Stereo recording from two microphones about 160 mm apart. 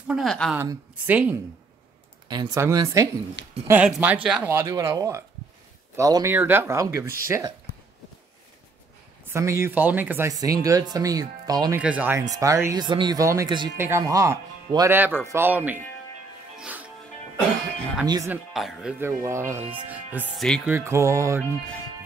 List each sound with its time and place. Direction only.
0.1 s a woman's voice: centre (ahead or behind)
0.6 s speech: 15° right (ahead or behind)
2.2 s speech: 25° right (ahead or behind)
3.6 s speech: 10° right (ahead or behind)
9.3 s speech: 20° right (ahead or behind)
11.7 s speech: 10° right (ahead or behind)
16.5 s music: 10° right (ahead or behind)
18.0 s speech: 25° right (ahead or behind)
18.3 s speech: centre (ahead or behind)
20.3 s a woman's voice: 5° left (ahead or behind)
20.6 s speech: 15° right (ahead or behind)